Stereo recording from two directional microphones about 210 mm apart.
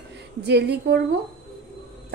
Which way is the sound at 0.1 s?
55° right (ahead or behind).